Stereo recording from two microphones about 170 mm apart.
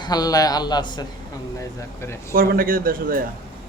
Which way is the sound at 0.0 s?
20° left (ahead or behind).